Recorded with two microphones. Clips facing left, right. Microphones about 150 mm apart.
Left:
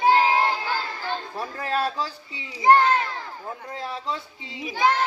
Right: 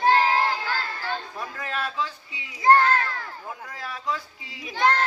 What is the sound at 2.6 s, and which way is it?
A child's voice, 15° left (ahead or behind).